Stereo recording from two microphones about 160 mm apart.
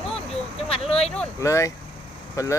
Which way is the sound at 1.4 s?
20° left (ahead or behind).